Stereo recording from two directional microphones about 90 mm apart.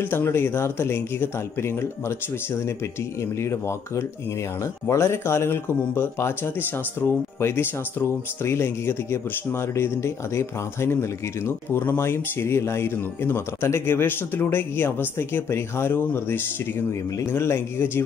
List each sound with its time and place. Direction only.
0.0 s speech: 25° left (ahead or behind)